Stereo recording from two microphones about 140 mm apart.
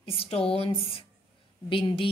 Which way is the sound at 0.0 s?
40° left (ahead or behind).